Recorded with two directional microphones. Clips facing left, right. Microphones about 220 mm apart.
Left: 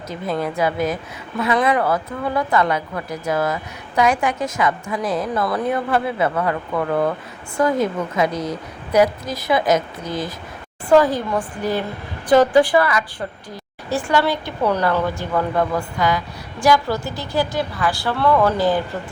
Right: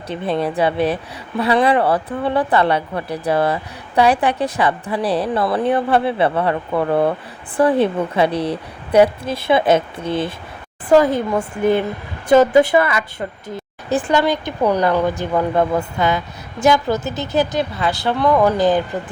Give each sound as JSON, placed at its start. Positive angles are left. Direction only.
{"t": 0.3, "sound": "speech", "side_deg": -30}